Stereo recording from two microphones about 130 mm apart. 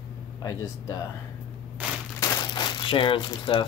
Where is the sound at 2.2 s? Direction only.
35° left (ahead or behind).